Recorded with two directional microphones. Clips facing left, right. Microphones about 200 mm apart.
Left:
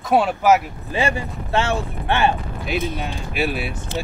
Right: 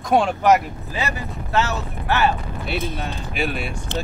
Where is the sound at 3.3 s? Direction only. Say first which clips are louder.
Left 2 dB; 5° left (ahead or behind).